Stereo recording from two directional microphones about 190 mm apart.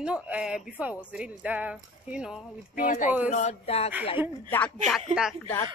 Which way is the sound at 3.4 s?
35° left (ahead or behind).